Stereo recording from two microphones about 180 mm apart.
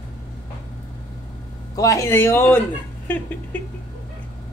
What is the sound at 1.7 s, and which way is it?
Speech, 20° left (ahead or behind).